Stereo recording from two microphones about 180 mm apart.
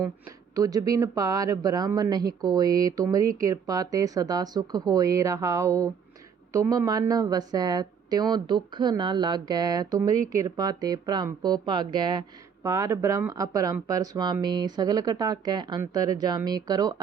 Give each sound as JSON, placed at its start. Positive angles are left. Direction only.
{"t": 0.0, "sound": "speech", "side_deg": -20}